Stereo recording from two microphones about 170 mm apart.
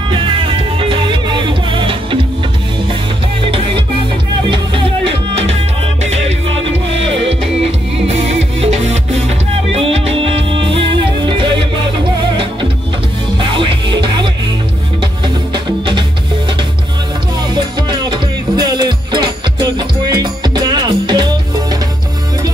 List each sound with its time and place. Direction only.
0.1 s music: 30° right (ahead or behind)
3.5 s music: 30° right (ahead or behind)
8.1 s music: 40° right (ahead or behind)
13.4 s music: 30° right (ahead or behind)
17.7 s music: 25° right (ahead or behind)